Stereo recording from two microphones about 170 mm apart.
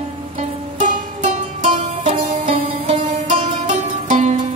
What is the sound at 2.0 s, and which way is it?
Music, 45° right (ahead or behind).